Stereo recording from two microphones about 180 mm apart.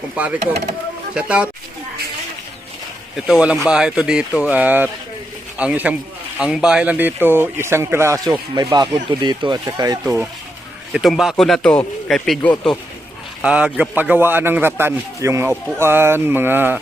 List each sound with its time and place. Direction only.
0.2 s a man's voice: 5° right (ahead or behind)
3.2 s a man's voice: 5° right (ahead or behind); by 10.2 s 20° right (ahead or behind)
10.9 s speech: centre (ahead or behind)
13.4 s a man's voice: 5° right (ahead or behind)